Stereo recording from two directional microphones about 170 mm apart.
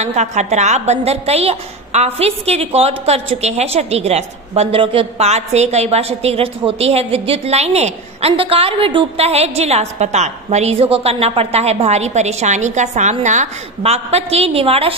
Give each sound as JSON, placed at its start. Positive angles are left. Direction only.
{"t": 0.0, "sound": "a woman's voice", "side_deg": -40}